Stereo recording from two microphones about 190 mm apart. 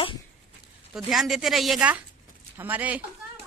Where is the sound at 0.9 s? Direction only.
Centre (ahead or behind).